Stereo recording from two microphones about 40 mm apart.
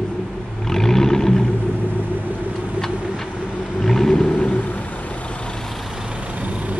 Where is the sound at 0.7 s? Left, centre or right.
Centre.